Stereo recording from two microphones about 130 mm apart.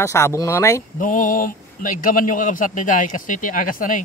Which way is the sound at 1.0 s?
90° left.